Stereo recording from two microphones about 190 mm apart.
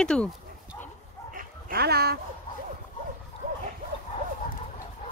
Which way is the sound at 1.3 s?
55° right (ahead or behind).